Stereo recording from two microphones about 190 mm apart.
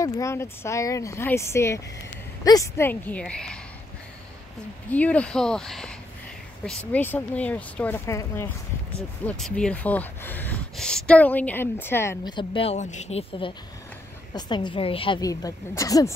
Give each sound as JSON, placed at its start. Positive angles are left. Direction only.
{"t": 0.0, "sound": "speech", "side_deg": 15}
{"t": 4.8, "sound": "speech", "side_deg": 10}
{"t": 12.4, "sound": "speech", "side_deg": 30}
{"t": 14.3, "sound": "a woman's voice", "side_deg": 25}